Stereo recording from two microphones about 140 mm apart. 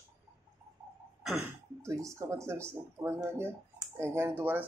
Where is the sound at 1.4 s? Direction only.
20° right (ahead or behind).